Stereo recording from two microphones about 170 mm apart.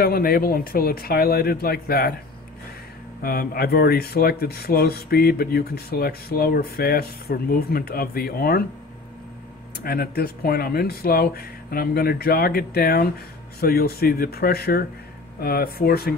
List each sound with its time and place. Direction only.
0.0 s speech: 60° left (ahead or behind)
3.2 s speech: 60° left (ahead or behind)
9.8 s speech: 65° left (ahead or behind)